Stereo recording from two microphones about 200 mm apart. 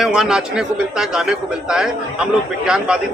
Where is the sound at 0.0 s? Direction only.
5° right (ahead or behind).